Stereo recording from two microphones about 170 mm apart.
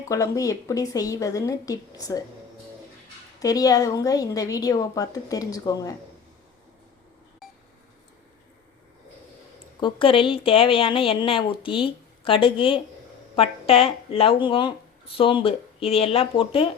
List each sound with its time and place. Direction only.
0.1 s a woman's voice: 20° left (ahead or behind)
3.4 s a woman's voice: 20° left (ahead or behind)
9.8 s speech: 30° left (ahead or behind)